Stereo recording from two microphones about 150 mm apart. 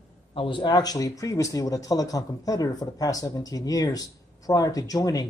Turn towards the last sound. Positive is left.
turn(degrees=25)  # may be behind; listen again after turning